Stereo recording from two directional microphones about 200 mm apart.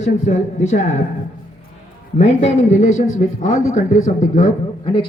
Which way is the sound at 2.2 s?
35° left (ahead or behind).